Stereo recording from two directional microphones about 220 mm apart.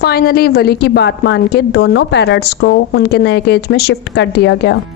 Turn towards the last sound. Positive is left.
turn(degrees=55)  # may be behind; listen again after turning